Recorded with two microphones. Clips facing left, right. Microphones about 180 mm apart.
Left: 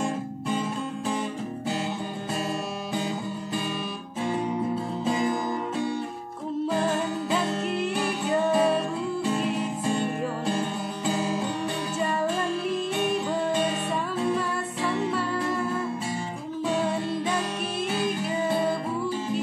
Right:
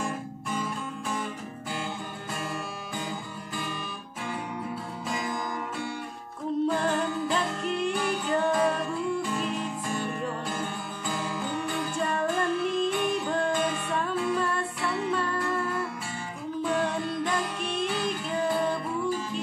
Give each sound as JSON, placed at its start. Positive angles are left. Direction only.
{"t": 0.5, "sound": "music", "side_deg": 25}
{"t": 5.0, "sound": "music", "side_deg": 25}
{"t": 7.2, "sound": "music", "side_deg": 5}
{"t": 11.1, "sound": "music", "side_deg": 25}
{"t": 12.0, "sound": "music", "side_deg": 5}
{"t": 13.5, "sound": "music", "side_deg": 30}